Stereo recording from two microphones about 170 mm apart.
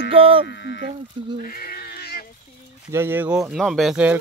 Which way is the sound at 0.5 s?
90° left.